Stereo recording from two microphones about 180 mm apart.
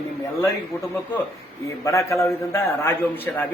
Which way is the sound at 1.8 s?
15° left (ahead or behind).